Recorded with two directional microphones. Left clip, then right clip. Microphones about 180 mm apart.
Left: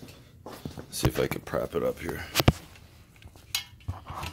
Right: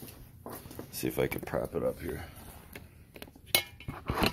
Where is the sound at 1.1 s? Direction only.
25° left (ahead or behind).